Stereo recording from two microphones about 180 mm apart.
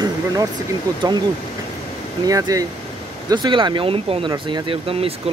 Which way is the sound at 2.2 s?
20° right (ahead or behind).